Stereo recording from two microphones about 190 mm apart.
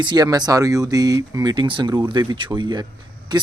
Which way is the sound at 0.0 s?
20° right (ahead or behind).